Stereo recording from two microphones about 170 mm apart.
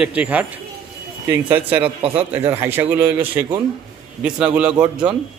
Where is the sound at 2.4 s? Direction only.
15° right (ahead or behind).